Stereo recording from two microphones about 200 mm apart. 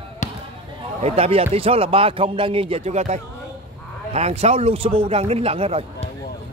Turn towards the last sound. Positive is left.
turn(degrees=-30)  # may be behind; listen again after turning